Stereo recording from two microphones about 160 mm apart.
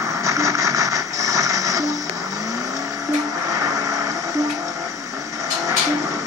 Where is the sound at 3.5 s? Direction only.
20° right (ahead or behind).